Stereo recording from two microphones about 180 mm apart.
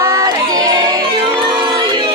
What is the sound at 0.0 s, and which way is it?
Female singing, 20° right (ahead or behind).